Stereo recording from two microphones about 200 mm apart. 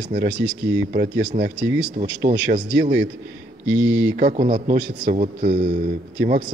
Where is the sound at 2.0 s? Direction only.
35° right (ahead or behind).